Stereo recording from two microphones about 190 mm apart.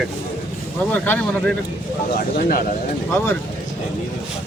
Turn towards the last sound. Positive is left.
turn(degrees=10)  # may be behind; listen again after turning